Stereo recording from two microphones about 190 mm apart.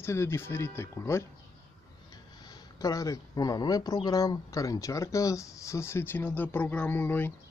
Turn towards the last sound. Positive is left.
turn(degrees=10)  # may be behind; listen again after turning